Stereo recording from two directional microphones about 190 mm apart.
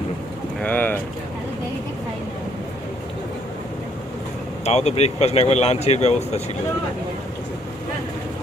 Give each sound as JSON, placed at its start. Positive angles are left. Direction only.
{"t": 0.6, "sound": "speech", "side_deg": 10}
{"t": 4.6, "sound": "speech", "side_deg": 35}